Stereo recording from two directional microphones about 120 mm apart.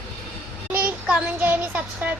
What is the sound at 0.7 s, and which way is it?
A child's voice, 10° right (ahead or behind).